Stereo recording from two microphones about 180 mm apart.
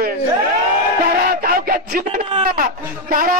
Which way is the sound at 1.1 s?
55° right (ahead or behind).